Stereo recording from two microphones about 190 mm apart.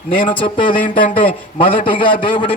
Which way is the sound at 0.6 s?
45° left (ahead or behind).